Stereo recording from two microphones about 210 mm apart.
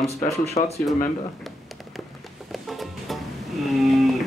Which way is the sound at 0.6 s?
25° left (ahead or behind).